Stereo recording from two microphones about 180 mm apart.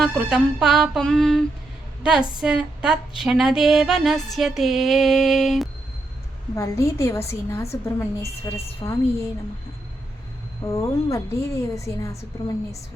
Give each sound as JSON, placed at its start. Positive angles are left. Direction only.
{"t": 0.0, "sound": "a sound", "side_deg": -5}
{"t": 6.6, "sound": "a woman's voice", "side_deg": 15}
{"t": 10.7, "sound": "a woman's voice", "side_deg": 15}